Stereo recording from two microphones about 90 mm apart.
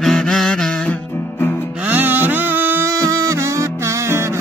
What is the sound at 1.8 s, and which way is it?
Music, 20° right (ahead or behind).